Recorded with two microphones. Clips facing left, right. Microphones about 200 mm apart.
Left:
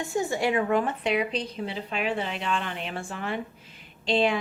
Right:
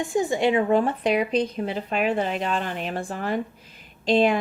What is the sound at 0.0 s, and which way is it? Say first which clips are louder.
Speech: right 4 dB; 15° right (ahead or behind).